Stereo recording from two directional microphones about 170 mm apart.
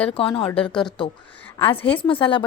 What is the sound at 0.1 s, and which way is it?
Speech, 35° left (ahead or behind).